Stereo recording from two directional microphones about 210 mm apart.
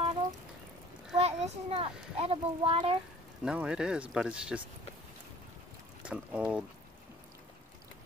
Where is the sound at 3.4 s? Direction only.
5° right (ahead or behind).